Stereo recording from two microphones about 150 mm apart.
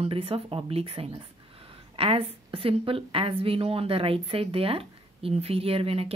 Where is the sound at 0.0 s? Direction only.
40° right (ahead or behind).